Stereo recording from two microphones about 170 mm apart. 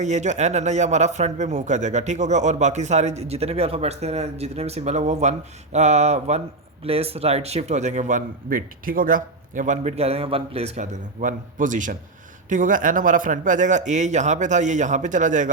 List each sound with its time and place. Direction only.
0.0 s speech: 45° right (ahead or behind)
5.7 s a sound: 40° right (ahead or behind)
6.8 s speech: 35° right (ahead or behind)